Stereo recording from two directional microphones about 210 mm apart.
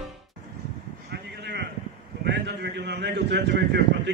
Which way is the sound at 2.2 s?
55° right (ahead or behind).